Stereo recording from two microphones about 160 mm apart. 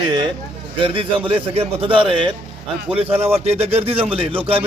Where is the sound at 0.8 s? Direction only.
35° right (ahead or behind).